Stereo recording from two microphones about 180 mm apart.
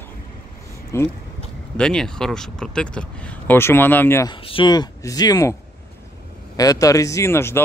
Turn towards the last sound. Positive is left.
turn(degrees=15)  # may be behind; listen again after turning